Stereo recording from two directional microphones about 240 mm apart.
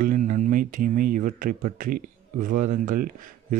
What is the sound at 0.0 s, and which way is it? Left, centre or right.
Speech, right.